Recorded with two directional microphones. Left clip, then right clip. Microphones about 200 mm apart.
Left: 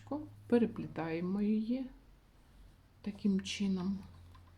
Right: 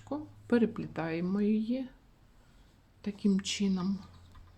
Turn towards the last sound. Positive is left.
turn(degrees=-20)  # may be behind; listen again after turning